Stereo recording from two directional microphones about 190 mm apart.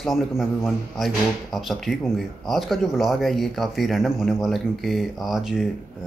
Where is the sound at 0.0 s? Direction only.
Centre (ahead or behind).